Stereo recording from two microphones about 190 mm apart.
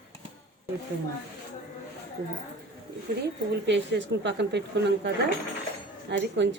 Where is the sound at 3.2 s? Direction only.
65° right (ahead or behind).